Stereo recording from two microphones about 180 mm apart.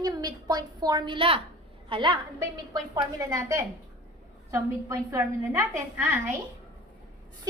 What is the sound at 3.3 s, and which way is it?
A woman's voice, 15° right (ahead or behind).